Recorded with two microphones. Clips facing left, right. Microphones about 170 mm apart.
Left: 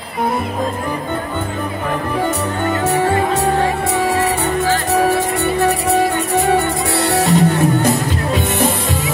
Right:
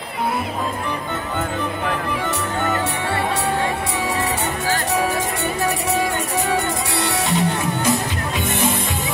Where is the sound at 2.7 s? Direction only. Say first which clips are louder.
Left 7 dB; 45° left (ahead or behind).